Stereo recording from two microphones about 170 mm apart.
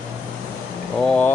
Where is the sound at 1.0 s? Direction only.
5° left (ahead or behind).